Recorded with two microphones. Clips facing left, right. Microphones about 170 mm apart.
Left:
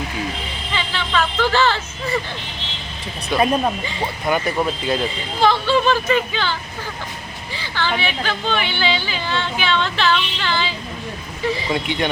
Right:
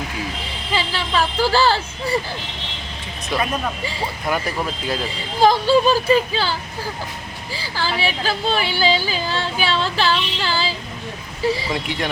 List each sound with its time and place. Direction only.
0.7 s a sound: 35° right (ahead or behind)
3.3 s speech: 25° left (ahead or behind)
4.3 s speech: centre (ahead or behind)
5.4 s speech: 40° right (ahead or behind)
11.7 s speech: centre (ahead or behind)